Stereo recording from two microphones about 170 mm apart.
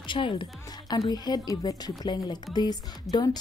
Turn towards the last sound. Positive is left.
turn(degrees=25)  # may be behind; listen again after turning